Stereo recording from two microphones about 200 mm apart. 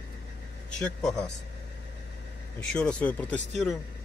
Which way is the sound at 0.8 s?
Centre (ahead or behind).